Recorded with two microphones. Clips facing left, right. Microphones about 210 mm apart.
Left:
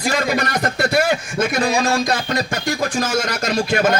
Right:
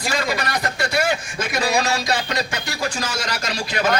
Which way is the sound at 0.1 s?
45° left (ahead or behind).